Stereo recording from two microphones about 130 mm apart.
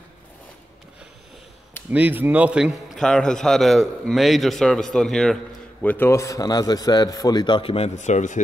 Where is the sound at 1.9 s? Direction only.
10° right (ahead or behind).